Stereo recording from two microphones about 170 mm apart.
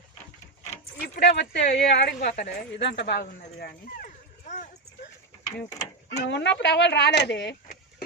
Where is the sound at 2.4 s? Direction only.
90° left; by 4.6 s 50° left (ahead or behind).